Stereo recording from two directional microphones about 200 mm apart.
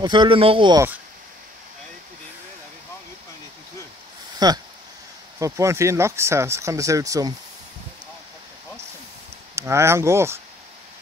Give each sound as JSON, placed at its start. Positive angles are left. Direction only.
{"t": 0.0, "sound": "speech", "side_deg": -25}
{"t": 4.4, "sound": "speech", "side_deg": -20}
{"t": 9.6, "sound": "speech", "side_deg": -15}